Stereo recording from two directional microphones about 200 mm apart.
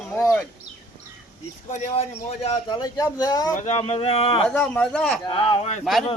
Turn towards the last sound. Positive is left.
turn(degrees=30)  # may be behind; listen again after turning